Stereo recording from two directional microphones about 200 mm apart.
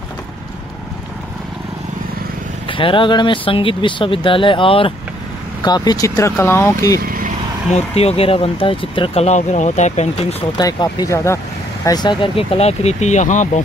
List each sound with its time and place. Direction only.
2.7 s speech: 25° left (ahead or behind)
7.0 s vehicle: 45° right (ahead or behind)
7.7 s speech: 30° left (ahead or behind)
10.6 s speech: 20° left (ahead or behind); by 13.5 s 35° left (ahead or behind)